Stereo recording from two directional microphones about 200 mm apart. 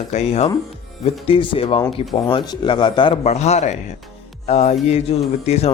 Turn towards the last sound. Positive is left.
turn(degrees=30)  # may be behind; listen again after turning